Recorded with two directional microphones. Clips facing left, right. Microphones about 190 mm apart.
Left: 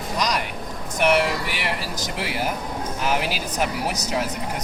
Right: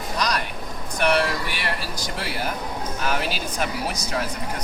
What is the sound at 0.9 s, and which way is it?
Speech, 15° left (ahead or behind).